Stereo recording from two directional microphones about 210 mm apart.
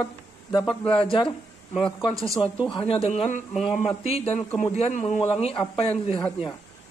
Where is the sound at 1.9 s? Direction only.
Centre (ahead or behind).